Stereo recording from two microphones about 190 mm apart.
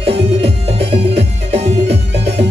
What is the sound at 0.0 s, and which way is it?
Music, 30° right (ahead or behind).